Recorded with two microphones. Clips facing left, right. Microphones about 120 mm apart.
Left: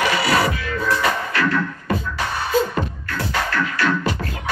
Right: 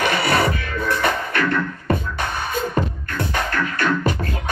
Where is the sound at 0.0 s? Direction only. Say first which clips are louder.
Even; 50° right (ahead or behind).